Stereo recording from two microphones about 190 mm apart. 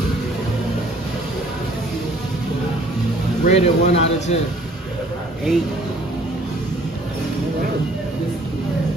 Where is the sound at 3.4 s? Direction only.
35° left (ahead or behind).